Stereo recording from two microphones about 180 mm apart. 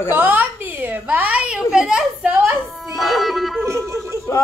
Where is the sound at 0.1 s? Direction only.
10° right (ahead or behind).